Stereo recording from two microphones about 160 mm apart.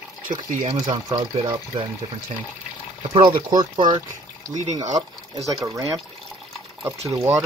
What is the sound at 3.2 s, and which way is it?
Speech, 30° right (ahead or behind).